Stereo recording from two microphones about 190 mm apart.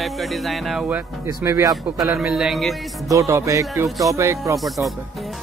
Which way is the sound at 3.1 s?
15° right (ahead or behind).